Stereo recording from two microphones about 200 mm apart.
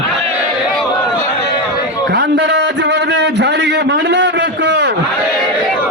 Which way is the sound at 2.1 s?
60° right (ahead or behind).